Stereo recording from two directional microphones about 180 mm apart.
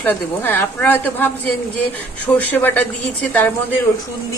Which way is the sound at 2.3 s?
10° left (ahead or behind).